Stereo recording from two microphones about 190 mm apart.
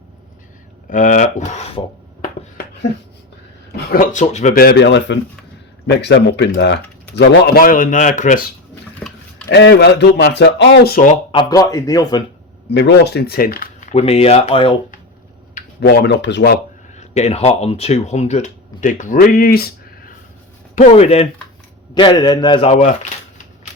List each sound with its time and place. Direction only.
0.9 s rub: 45° left (ahead or behind)
3.8 s rub: 50° left (ahead or behind)
4.5 s speech: 55° left (ahead or behind); by 8.5 s 40° left (ahead or behind)
8.7 s a sound: 10° left (ahead or behind)
9.5 s speech: 65° left (ahead or behind); by 11.2 s 45° left (ahead or behind)
11.3 s a man's voice: 25° left (ahead or behind)
12.7 s speech: 65° left (ahead or behind)
13.9 s rub: 30° left (ahead or behind)
15.5 s speech: 55° left (ahead or behind)
16.9 s speech: 35° left (ahead or behind); by 20.1 s 55° left (ahead or behind)
20.7 s rub: 35° left (ahead or behind)
21.9 s a man's voice: 25° left (ahead or behind)